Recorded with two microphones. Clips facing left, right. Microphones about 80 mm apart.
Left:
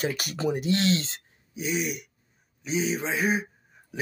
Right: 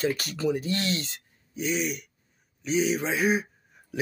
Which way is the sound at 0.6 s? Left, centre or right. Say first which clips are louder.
Left 4 dB; left.